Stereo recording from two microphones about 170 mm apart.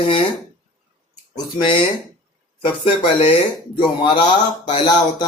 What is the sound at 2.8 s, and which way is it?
Speech, 30° left (ahead or behind).